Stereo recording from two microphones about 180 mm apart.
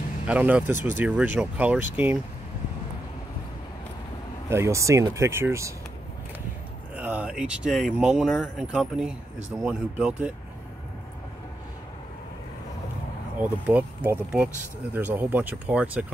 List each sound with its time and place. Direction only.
0.3 s speech: 5° right (ahead or behind)
4.5 s speech: 15° right (ahead or behind)
7.0 s speech: 10° right (ahead or behind)
13.4 s speech: 10° right (ahead or behind)